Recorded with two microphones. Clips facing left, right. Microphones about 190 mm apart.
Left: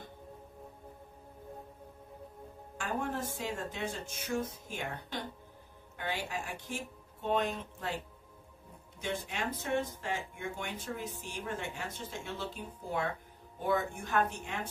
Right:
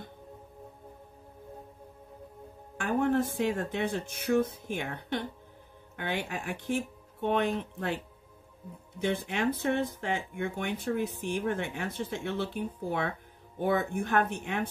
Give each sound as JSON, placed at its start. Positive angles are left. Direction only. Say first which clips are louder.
{"t": 2.8, "sound": "speech", "louder": "right 9 dB", "side_deg": -60}
{"t": 9.0, "sound": "speech", "louder": "right 7 dB", "side_deg": -60}